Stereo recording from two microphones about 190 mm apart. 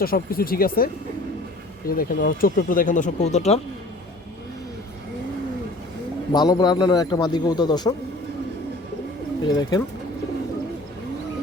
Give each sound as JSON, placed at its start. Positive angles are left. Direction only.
{"t": 0.0, "sound": "speech", "side_deg": 50}
{"t": 1.9, "sound": "speech", "side_deg": 50}
{"t": 6.3, "sound": "a man's voice", "side_deg": 20}
{"t": 9.6, "sound": "a man's voice", "side_deg": 20}